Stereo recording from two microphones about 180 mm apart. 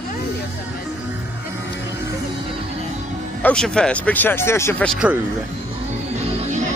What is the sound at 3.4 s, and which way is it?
Speech, 5° left (ahead or behind).